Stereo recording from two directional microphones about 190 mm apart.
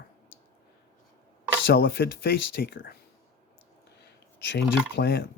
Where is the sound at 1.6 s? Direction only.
55° left (ahead or behind).